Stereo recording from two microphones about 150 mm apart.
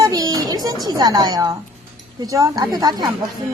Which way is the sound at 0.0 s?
25° right (ahead or behind).